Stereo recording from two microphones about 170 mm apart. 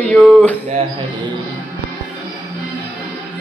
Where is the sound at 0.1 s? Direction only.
10° left (ahead or behind).